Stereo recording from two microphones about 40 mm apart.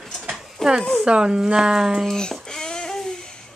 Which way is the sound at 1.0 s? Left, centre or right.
Right.